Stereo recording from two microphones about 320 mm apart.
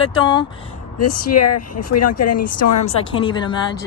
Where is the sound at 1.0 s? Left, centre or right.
Left.